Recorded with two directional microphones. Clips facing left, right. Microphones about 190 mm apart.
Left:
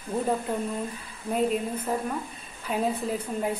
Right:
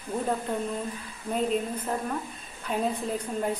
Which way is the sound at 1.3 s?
5° left (ahead or behind).